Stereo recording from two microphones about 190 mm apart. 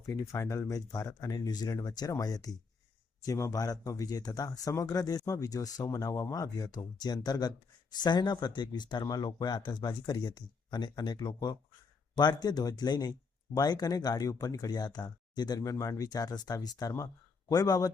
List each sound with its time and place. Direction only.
0.0 s speech: 15° left (ahead or behind)